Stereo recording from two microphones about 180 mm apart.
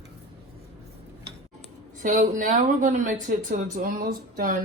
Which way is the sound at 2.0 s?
45° right (ahead or behind).